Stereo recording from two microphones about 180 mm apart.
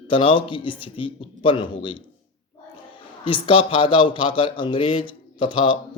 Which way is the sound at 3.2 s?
30° left (ahead or behind).